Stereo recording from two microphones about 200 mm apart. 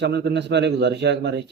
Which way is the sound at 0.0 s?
55° right (ahead or behind).